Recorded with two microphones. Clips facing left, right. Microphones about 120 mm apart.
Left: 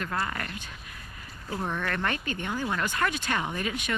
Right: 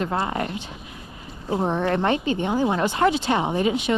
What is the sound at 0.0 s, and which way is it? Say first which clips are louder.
Speech: right 7 dB; 25° right (ahead or behind).